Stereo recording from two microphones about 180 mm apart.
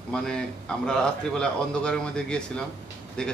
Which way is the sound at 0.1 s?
5° left (ahead or behind).